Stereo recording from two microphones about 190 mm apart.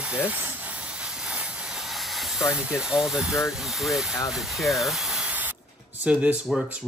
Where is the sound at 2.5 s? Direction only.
5° right (ahead or behind).